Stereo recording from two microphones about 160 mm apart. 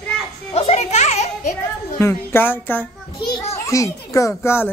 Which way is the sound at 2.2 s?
15° left (ahead or behind).